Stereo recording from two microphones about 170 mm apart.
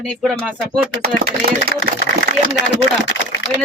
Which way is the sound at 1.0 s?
65° right (ahead or behind).